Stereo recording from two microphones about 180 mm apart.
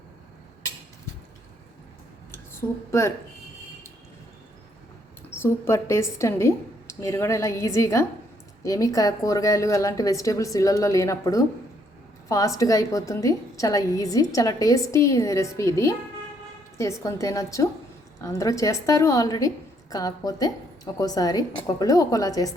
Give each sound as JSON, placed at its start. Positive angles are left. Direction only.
{"t": 2.3, "sound": "a sound", "side_deg": 15}
{"t": 5.4, "sound": "a woman's voice", "side_deg": 15}
{"t": 17.0, "sound": "a woman's voice", "side_deg": 20}